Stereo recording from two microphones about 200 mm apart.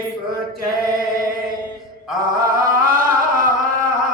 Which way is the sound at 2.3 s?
45° right (ahead or behind).